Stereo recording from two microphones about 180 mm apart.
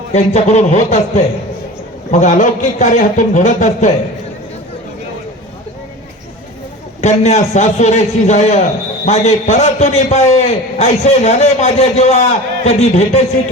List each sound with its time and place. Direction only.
0.1 s a man's voice: 40° left (ahead or behind)
7.0 s a man's voice: 40° left (ahead or behind)